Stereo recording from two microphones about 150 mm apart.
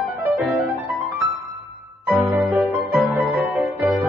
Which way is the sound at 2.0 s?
15° right (ahead or behind).